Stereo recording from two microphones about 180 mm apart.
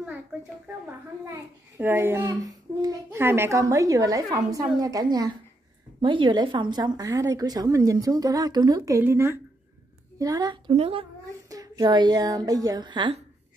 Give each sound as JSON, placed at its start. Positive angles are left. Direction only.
{"t": 1.8, "sound": "a child's voice", "side_deg": -10}
{"t": 10.7, "sound": "speech", "side_deg": -35}
{"t": 11.4, "sound": "a woman's voice", "side_deg": -20}